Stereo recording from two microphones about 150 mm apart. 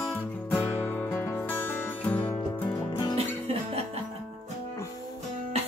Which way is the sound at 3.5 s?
45° right (ahead or behind).